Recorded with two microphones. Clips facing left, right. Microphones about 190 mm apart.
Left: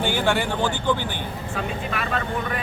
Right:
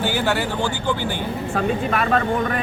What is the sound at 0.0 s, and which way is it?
Speech, 5° right (ahead or behind).